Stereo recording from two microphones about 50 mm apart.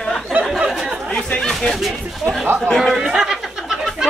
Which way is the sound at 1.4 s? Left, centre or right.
Centre.